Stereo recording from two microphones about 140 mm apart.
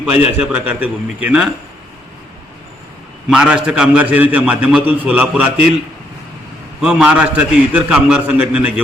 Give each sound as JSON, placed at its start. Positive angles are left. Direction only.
{"t": 0.3, "sound": "a man's voice", "side_deg": -15}
{"t": 3.2, "sound": "a man's voice", "side_deg": -5}
{"t": 6.8, "sound": "a man's voice", "side_deg": -5}